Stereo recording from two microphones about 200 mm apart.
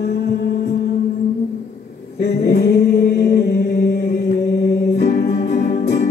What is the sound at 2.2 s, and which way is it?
Chant, 50° left (ahead or behind).